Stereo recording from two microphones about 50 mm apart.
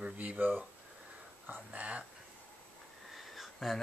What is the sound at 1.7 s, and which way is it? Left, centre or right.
Speech, right.